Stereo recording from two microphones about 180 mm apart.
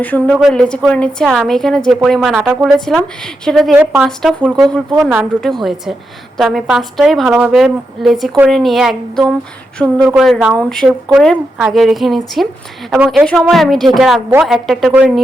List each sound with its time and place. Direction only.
0.0 s a woman's voice: 5° left (ahead or behind)